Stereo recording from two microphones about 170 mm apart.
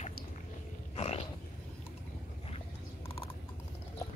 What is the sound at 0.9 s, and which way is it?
Wild animals, 40° left (ahead or behind).